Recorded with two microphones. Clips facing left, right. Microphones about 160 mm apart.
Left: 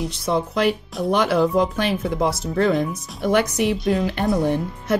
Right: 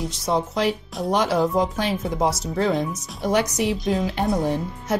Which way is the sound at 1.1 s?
60° left (ahead or behind).